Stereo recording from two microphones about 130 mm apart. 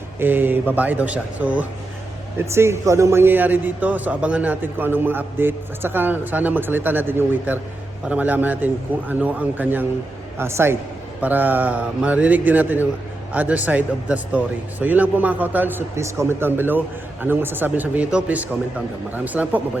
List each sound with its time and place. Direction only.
0.2 s a man's voice: 15° right (ahead or behind)